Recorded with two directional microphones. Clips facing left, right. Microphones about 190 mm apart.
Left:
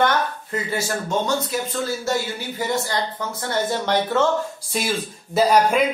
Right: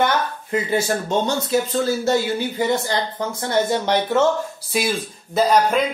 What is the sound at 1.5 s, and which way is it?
Speech, 25° right (ahead or behind).